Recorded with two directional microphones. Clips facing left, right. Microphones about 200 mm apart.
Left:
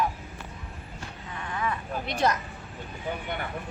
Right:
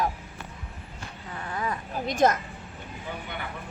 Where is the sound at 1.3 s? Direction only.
35° right (ahead or behind).